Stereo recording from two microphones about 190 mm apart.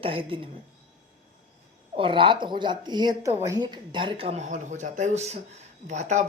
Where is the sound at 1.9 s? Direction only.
25° right (ahead or behind).